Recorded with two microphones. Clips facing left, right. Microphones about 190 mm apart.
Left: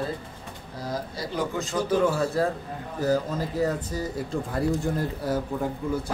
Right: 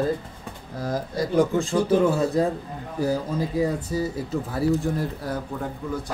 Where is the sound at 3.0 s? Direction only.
15° right (ahead or behind).